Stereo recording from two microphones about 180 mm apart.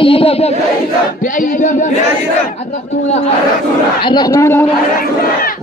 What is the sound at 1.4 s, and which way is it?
Speech, 45° left (ahead or behind).